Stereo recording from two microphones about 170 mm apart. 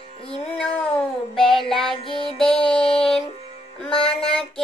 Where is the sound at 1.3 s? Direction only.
Centre (ahead or behind).